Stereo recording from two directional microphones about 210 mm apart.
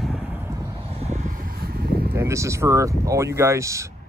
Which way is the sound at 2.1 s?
15° right (ahead or behind).